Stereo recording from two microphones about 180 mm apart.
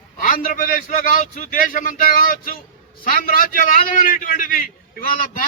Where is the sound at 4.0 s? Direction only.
50° left (ahead or behind).